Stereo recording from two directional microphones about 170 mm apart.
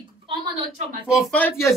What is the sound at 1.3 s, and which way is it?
Speech, 10° left (ahead or behind).